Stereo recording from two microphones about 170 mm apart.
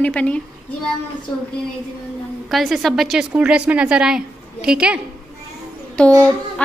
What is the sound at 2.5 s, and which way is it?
A woman's voice, centre (ahead or behind).